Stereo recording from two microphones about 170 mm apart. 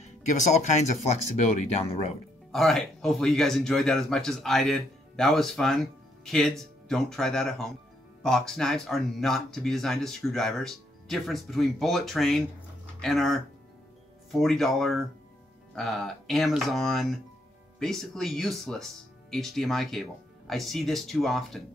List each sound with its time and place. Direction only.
0.0 s speech: 45° left (ahead or behind)
2.5 s speech: centre (ahead or behind)